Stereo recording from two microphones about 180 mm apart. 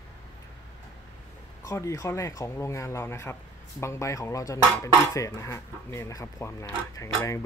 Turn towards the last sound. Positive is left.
turn(degrees=20)  # may be behind; listen again after turning